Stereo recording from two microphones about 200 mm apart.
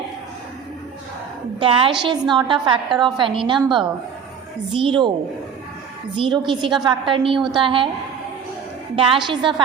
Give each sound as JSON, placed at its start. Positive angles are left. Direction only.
{"t": 1.5, "sound": "a woman's voice", "side_deg": -25}
{"t": 6.1, "sound": "a woman's voice", "side_deg": -25}
{"t": 9.0, "sound": "a woman's voice", "side_deg": -25}